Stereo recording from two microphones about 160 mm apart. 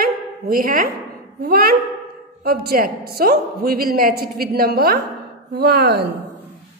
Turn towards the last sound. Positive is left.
turn(degrees=-90)